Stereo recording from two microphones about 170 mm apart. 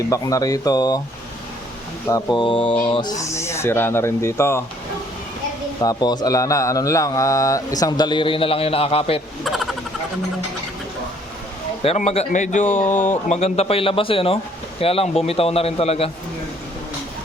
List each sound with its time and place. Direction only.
0.0 s speech: 20° left (ahead or behind)
2.0 s speech: 20° left (ahead or behind)
3.0 s speech: 20° left (ahead or behind)
5.8 s speech: 20° left (ahead or behind)
9.4 s speech: centre (ahead or behind)
11.8 s a man's voice: 40° left (ahead or behind)
12.6 s speech: 10° left (ahead or behind)
13.2 s a man's voice: 40° left (ahead or behind)